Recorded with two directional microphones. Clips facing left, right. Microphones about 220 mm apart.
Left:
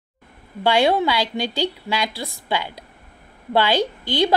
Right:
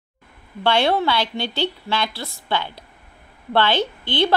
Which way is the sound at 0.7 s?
15° left (ahead or behind).